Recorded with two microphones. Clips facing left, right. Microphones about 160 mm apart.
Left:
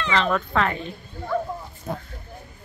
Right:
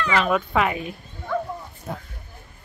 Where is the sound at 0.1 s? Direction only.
10° right (ahead or behind).